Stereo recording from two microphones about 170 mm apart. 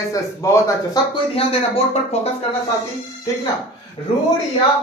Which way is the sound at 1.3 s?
35° left (ahead or behind).